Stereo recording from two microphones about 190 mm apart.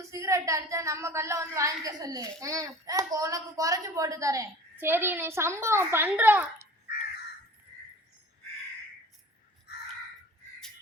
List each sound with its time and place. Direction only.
0.0 s a woman's voice: 15° right (ahead or behind)